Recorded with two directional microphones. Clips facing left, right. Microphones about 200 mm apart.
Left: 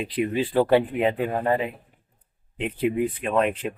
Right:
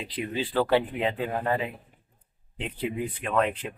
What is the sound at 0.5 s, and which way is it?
Speech, 15° left (ahead or behind).